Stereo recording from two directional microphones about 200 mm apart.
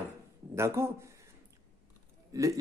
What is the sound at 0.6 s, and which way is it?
Speech, 15° right (ahead or behind).